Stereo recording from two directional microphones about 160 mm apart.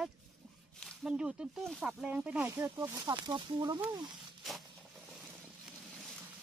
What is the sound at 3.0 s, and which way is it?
Speech, 30° right (ahead or behind).